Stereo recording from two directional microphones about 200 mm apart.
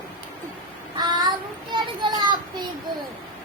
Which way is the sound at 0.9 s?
20° right (ahead or behind).